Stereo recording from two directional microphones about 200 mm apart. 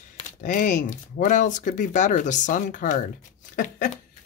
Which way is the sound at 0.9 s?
40° left (ahead or behind).